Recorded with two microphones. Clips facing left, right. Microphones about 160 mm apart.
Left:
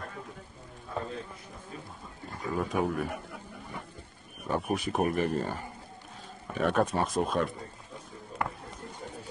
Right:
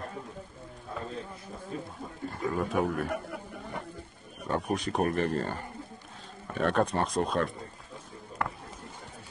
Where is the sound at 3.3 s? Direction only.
65° right (ahead or behind).